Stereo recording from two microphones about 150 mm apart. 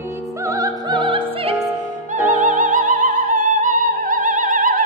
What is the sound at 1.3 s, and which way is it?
Opera, 40° right (ahead or behind).